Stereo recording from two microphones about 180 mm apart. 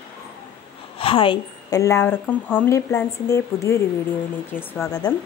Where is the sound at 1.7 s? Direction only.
15° left (ahead or behind).